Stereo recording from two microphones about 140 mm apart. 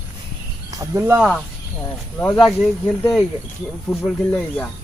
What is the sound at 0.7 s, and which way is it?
Speech, 20° right (ahead or behind).